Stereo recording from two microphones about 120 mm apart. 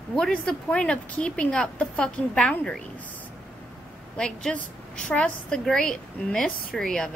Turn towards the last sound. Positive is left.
turn(degrees=5)  # may be behind; listen again after turning